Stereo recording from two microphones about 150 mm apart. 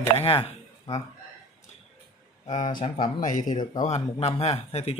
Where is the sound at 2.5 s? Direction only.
55° left (ahead or behind).